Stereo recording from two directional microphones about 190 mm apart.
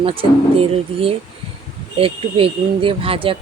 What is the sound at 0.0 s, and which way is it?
Speech, 30° right (ahead or behind).